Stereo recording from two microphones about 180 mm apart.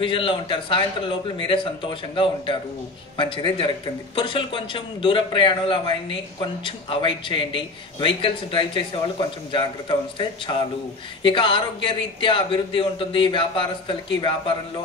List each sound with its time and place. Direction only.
0.0 s a man's voice: 30° left (ahead or behind)